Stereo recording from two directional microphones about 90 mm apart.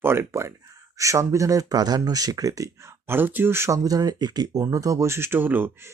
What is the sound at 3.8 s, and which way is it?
Speech, 45° right (ahead or behind).